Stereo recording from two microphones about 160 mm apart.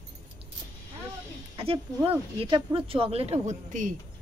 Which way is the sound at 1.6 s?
35° right (ahead or behind).